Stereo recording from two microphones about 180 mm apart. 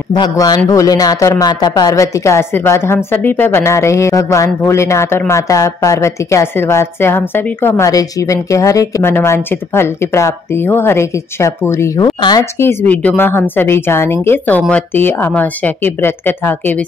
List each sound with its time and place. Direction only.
0.1 s a man's voice: 25° left (ahead or behind)